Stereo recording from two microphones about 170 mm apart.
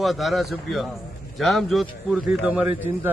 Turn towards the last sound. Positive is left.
turn(degrees=-10)  # may be behind; listen again after turning